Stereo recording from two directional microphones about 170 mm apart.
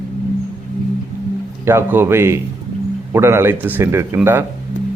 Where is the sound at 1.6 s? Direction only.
15° right (ahead or behind).